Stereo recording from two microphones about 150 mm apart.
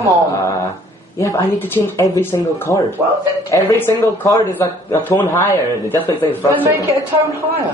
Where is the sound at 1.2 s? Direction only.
20° left (ahead or behind).